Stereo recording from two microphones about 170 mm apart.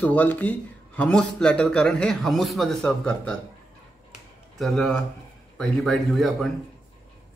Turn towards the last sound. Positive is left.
turn(degrees=0)  # may be behind; listen again after turning